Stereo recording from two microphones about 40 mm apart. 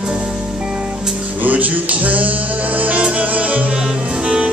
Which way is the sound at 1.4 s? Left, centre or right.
Right.